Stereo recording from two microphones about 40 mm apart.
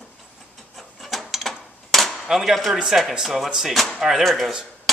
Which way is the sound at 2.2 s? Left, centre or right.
Centre.